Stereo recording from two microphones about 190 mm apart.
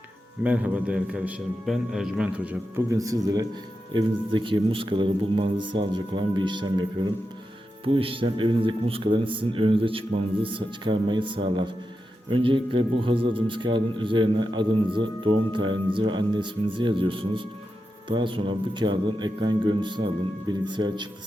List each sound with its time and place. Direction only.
0.4 s a man's voice: 5° right (ahead or behind); by 21.1 s 25° right (ahead or behind)